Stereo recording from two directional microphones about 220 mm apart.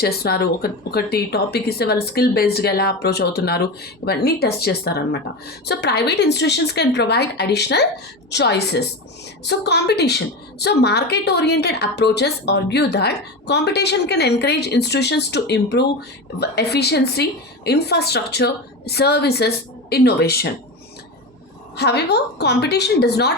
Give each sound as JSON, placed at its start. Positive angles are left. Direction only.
{"t": 0.0, "sound": "a woman's voice", "side_deg": 45}
{"t": 21.8, "sound": "a woman's voice", "side_deg": 50}